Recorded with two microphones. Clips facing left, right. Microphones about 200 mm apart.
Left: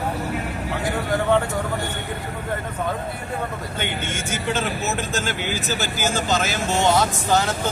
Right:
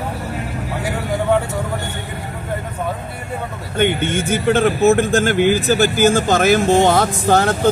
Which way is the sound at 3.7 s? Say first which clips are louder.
Right 13 dB; 55° right (ahead or behind).